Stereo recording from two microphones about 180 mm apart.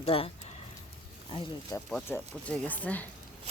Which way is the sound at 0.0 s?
30° left (ahead or behind).